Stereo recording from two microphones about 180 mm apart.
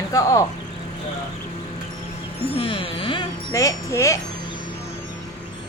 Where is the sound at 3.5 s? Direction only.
15° left (ahead or behind).